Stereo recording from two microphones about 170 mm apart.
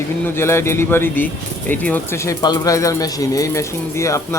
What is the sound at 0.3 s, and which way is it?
Speech, 15° left (ahead or behind).